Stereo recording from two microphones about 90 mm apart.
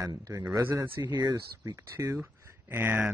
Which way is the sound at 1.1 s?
45° right (ahead or behind).